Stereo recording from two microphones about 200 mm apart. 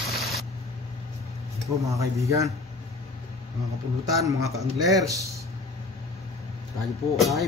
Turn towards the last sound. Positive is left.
turn(degrees=0)  # may be behind; listen again after turning